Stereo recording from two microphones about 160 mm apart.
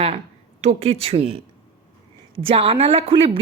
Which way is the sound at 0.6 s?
40° right (ahead or behind).